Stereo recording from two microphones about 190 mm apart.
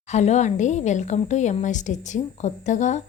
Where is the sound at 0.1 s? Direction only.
35° left (ahead or behind).